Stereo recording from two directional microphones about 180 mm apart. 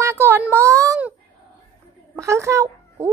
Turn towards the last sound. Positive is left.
turn(degrees=-15)  # may be behind; listen again after turning